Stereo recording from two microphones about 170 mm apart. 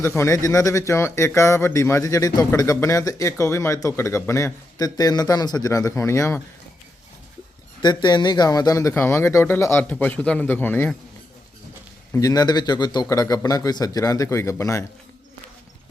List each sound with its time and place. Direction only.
0.0 s speech: 15° left (ahead or behind)
7.8 s speech: 25° left (ahead or behind)
12.1 s a man's voice: 20° left (ahead or behind)